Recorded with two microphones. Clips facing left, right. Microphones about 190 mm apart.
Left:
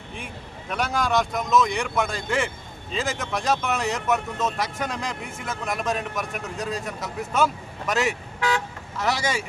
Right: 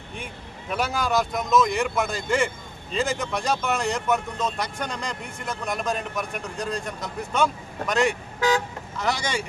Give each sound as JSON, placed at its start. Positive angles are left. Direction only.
{"t": 0.7, "sound": "speech", "side_deg": 0}
{"t": 8.4, "sound": "speech", "side_deg": -40}
{"t": 9.0, "sound": "speech", "side_deg": 5}